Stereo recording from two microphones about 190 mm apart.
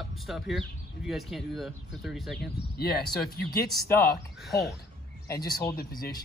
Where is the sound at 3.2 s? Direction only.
55° left (ahead or behind).